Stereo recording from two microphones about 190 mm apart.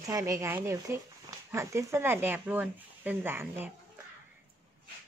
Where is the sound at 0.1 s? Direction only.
15° right (ahead or behind).